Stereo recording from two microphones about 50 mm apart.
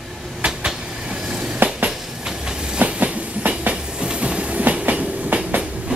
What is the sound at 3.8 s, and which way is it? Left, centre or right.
Train, centre.